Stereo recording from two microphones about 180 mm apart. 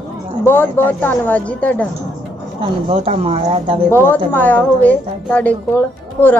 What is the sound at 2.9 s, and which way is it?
Speech, 35° right (ahead or behind).